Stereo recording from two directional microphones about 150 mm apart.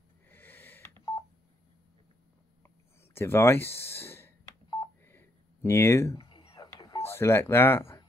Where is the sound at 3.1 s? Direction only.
15° left (ahead or behind).